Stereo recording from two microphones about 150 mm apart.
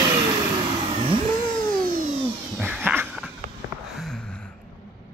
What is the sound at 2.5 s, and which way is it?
Cat, 10° right (ahead or behind).